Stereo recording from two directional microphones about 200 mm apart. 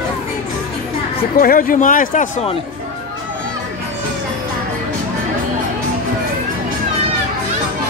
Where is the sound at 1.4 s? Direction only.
45° left (ahead or behind).